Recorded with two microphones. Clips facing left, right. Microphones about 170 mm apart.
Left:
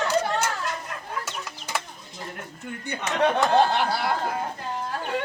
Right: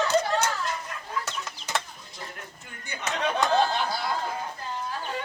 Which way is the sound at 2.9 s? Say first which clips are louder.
Left 5 dB; 60° left (ahead or behind).